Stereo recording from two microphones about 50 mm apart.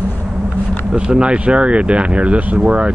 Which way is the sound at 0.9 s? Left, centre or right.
Centre.